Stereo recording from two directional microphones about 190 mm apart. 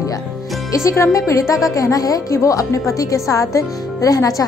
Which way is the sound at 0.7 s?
15° left (ahead or behind).